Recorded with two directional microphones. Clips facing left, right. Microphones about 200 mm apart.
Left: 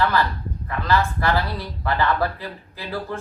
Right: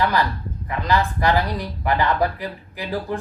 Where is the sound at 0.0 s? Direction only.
15° right (ahead or behind).